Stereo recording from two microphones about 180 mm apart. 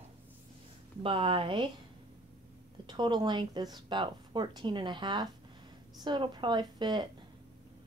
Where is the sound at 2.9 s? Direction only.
25° right (ahead or behind).